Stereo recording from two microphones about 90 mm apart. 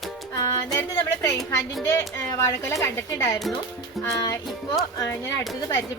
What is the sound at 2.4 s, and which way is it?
Speech, 35° left (ahead or behind).